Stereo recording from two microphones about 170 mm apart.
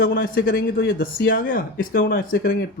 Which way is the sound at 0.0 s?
60° left (ahead or behind).